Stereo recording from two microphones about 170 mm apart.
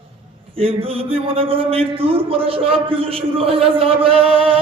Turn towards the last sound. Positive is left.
turn(degrees=-35)  # may be behind; listen again after turning